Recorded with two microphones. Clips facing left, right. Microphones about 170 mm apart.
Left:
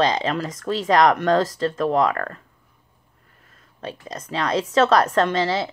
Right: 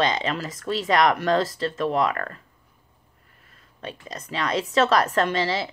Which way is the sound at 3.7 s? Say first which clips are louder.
Left 3 dB; 45° left (ahead or behind).